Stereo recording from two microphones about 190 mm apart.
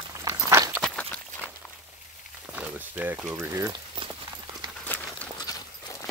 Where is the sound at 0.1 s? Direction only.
15° right (ahead or behind).